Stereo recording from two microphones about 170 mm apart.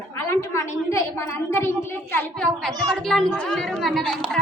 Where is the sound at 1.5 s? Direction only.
15° left (ahead or behind).